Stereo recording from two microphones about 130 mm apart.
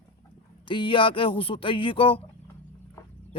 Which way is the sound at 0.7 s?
40° left (ahead or behind).